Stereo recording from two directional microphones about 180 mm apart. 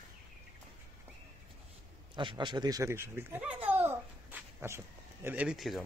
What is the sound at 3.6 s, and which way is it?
Babbling, 10° right (ahead or behind).